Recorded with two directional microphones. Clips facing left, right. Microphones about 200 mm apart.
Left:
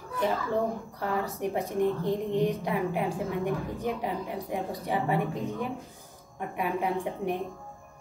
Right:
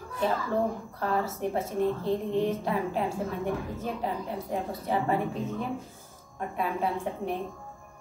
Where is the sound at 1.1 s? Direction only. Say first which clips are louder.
Right 1 dB; 15° left (ahead or behind).